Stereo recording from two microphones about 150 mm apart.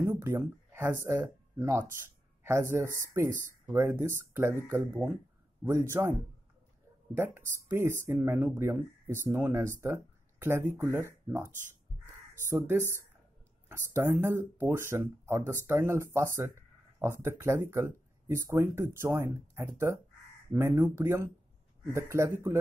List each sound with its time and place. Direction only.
0.0 s a sound: 15° right (ahead or behind)
1.0 s speech: 15° right (ahead or behind)
7.7 s speech: 15° right (ahead or behind)
11.9 s crow: centre (ahead or behind)
12.4 s a man's voice: 15° right (ahead or behind)